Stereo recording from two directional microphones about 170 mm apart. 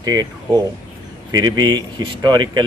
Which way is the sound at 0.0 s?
20° right (ahead or behind).